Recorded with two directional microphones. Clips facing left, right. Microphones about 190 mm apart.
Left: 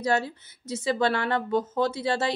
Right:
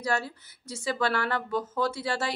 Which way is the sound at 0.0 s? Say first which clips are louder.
Left 4 dB; 20° left (ahead or behind).